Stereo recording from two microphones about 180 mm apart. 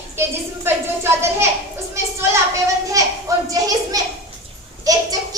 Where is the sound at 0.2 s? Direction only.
15° right (ahead or behind).